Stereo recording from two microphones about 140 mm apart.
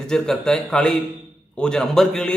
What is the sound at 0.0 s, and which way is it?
A man's voice, 5° left (ahead or behind).